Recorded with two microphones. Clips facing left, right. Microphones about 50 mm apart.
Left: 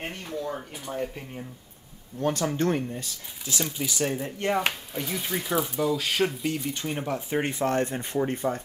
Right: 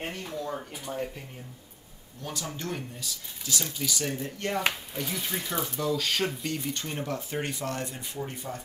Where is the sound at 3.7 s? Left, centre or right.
Left.